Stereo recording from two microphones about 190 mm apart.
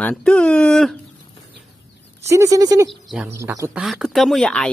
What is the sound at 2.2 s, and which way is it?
Speech, 15° right (ahead or behind).